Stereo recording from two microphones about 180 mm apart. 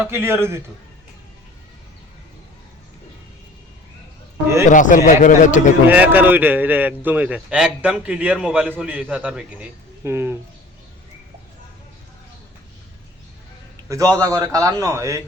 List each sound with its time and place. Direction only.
0.0 s a man's voice: 15° right (ahead or behind)
4.7 s a man's voice: 45° left (ahead or behind)
5.9 s a man's voice: 10° right (ahead or behind)
13.8 s a man's voice: 20° right (ahead or behind)